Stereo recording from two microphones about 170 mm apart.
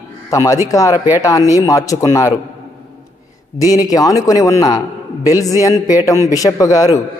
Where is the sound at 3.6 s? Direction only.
20° left (ahead or behind).